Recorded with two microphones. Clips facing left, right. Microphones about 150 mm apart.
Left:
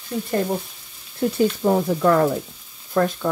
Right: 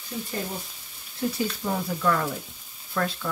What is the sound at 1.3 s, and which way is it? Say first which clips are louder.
Speech: left 10 dB; 50° left (ahead or behind).